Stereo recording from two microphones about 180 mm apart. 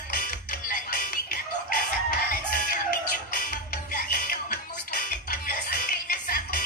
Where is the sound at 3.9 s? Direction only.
55° left (ahead or behind).